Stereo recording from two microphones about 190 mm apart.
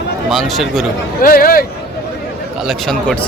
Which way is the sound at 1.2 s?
50° left (ahead or behind).